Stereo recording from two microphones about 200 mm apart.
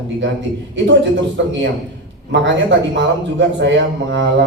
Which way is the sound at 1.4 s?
65° right (ahead or behind).